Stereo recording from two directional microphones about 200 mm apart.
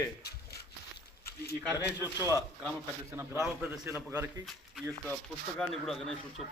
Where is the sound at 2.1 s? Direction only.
15° left (ahead or behind).